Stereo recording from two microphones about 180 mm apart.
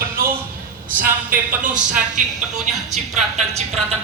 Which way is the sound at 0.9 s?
50° right (ahead or behind).